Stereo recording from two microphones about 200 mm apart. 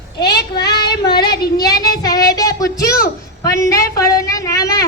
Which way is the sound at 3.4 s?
15° left (ahead or behind).